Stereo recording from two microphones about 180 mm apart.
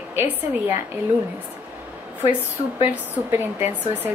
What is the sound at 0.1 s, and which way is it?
Speech, 10° right (ahead or behind).